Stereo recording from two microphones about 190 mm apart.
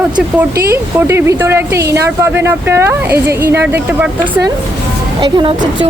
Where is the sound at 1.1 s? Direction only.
15° right (ahead or behind).